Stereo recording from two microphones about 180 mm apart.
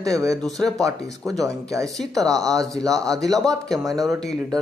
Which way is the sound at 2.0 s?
Centre (ahead or behind).